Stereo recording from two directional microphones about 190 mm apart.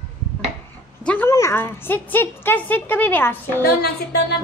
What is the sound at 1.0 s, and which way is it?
A woman's voice, 10° left (ahead or behind).